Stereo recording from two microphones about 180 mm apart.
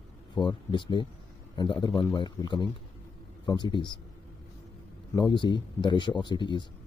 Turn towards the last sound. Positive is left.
turn(degrees=25)  # may be behind; listen again after turning